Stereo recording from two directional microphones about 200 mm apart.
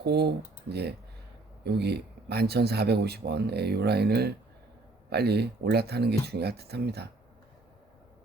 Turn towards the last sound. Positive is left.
turn(degrees=-55)  # may be behind; listen again after turning